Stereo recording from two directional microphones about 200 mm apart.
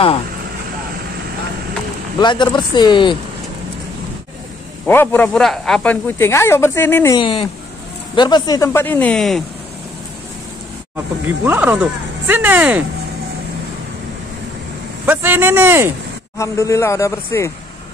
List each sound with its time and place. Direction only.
2.1 s speech: 25° left (ahead or behind)
4.8 s speech: 10° left (ahead or behind)
7.2 s speech: 25° left (ahead or behind); by 9.4 s 5° left (ahead or behind)
11.4 s speech: 10° right (ahead or behind)
15.0 s a man's voice: 10° right (ahead or behind)
16.3 s speech: 15° left (ahead or behind)